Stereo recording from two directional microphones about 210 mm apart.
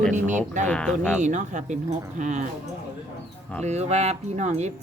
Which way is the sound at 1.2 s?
35° right (ahead or behind).